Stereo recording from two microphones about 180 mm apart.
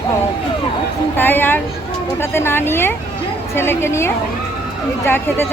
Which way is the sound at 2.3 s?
10° left (ahead or behind).